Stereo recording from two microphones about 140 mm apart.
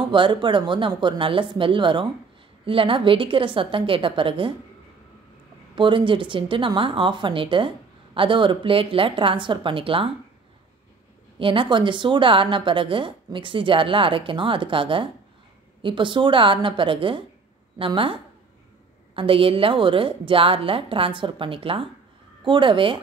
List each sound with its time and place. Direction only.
0.1 s a woman's voice: 35° right (ahead or behind)
5.8 s a woman's voice: 35° right (ahead or behind)
11.3 s a woman's voice: 40° right (ahead or behind)